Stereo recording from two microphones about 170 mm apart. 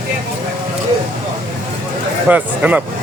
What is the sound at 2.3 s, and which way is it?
Speech, 10° right (ahead or behind).